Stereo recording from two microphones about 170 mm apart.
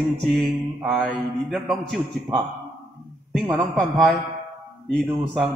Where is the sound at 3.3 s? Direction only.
Centre (ahead or behind).